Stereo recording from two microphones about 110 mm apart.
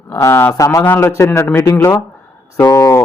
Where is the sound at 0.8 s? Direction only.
20° left (ahead or behind).